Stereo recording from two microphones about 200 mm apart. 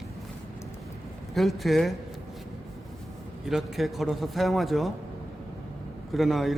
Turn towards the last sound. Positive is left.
turn(degrees=0)  # may be behind; listen again after turning